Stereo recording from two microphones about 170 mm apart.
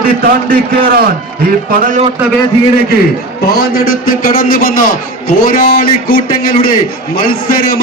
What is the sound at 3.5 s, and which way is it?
A man's voice, 65° left (ahead or behind).